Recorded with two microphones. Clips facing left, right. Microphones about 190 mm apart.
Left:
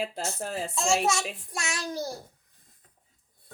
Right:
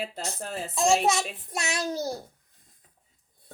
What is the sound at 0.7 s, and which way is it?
A woman's voice, 15° right (ahead or behind).